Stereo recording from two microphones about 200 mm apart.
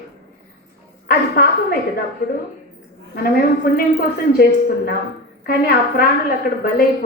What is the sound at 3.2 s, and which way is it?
Speech, 50° left (ahead or behind).